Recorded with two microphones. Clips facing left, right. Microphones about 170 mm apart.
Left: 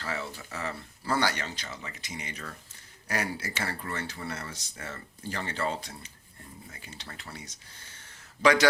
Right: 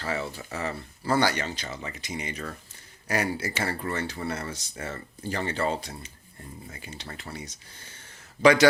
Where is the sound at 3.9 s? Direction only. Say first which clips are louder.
Right 5 dB; 30° right (ahead or behind).